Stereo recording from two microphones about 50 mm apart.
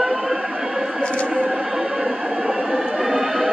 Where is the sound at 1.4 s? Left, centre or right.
Centre.